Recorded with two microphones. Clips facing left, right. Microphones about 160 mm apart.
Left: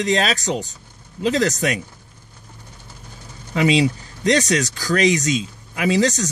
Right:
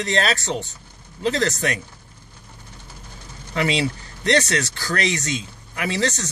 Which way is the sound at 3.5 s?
15° left (ahead or behind).